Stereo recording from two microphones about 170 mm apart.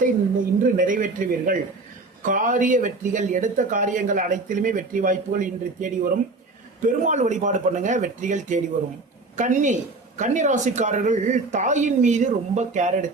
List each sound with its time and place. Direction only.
0.6 s a woman's voice: 50° right (ahead or behind)